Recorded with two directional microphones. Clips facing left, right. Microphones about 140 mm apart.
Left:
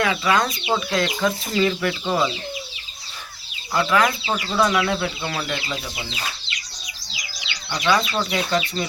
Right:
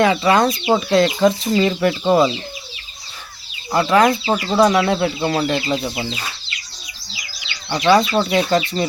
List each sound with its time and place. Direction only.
0.0 s speech: 35° right (ahead or behind)
3.7 s speech: 35° right (ahead or behind)
7.7 s speech: 30° right (ahead or behind)